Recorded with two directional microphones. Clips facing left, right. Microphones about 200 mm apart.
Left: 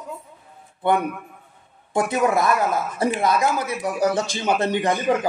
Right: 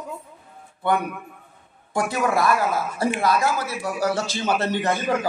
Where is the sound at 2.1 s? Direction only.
20° left (ahead or behind).